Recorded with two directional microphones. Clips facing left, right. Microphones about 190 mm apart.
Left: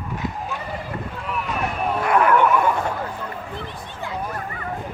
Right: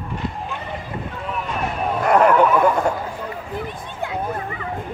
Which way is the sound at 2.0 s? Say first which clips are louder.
Right 4 dB; 40° right (ahead or behind).